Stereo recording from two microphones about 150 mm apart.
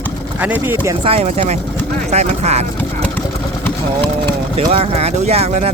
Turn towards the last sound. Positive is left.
turn(degrees=-45)  # may be behind; listen again after turning